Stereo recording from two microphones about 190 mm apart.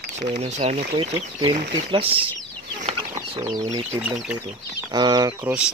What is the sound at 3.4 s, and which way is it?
Speech, 20° right (ahead or behind).